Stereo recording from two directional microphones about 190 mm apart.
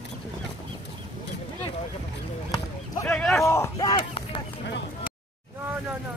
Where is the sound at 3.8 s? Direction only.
25° left (ahead or behind).